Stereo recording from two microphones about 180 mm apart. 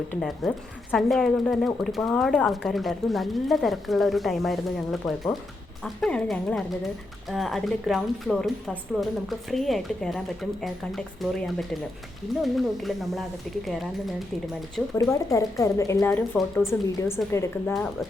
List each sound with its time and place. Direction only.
0.1 s a woman's voice: centre (ahead or behind)
14.8 s a woman's voice: 5° left (ahead or behind)
15.1 s speech: 15° left (ahead or behind)